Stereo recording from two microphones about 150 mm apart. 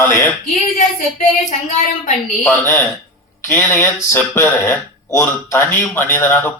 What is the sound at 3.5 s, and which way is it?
Speech, 15° left (ahead or behind).